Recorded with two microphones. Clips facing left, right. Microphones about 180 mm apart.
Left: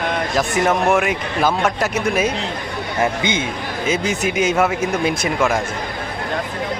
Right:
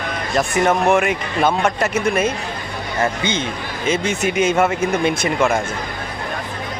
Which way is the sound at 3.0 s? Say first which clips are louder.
Left 1 dB; 15° left (ahead or behind).